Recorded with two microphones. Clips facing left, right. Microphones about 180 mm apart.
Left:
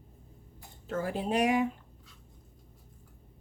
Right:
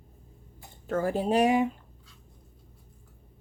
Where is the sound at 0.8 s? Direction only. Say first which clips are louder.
Right 5 dB; 50° right (ahead or behind); by 1.7 s 30° right (ahead or behind).